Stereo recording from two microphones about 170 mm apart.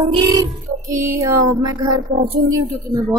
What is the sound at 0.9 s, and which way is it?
Speech, 15° right (ahead or behind).